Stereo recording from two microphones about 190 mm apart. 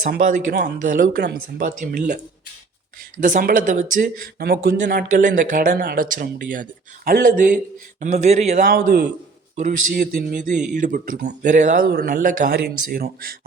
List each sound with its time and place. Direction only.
0.0 s speech: 45° right (ahead or behind)
3.2 s speech: 45° right (ahead or behind)
9.6 s speech: 50° right (ahead or behind)
10.3 s speech: 40° right (ahead or behind)
11.9 s speech: 55° right (ahead or behind)